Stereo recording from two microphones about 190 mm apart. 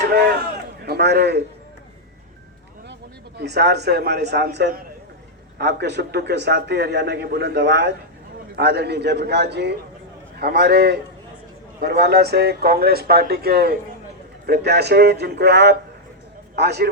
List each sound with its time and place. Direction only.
0.0 s a sound: 55° right (ahead or behind)
0.9 s a man's voice: 60° right (ahead or behind)
3.3 s a man's voice: 60° right (ahead or behind)